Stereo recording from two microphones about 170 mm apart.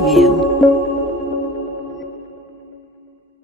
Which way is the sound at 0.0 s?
Centre (ahead or behind).